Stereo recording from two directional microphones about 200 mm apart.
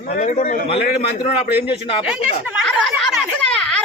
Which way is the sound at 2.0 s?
5° right (ahead or behind).